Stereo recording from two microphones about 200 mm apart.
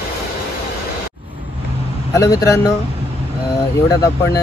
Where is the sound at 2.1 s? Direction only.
15° left (ahead or behind).